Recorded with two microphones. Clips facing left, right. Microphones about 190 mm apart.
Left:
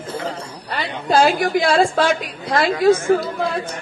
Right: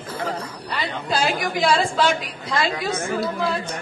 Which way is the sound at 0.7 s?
50° left (ahead or behind).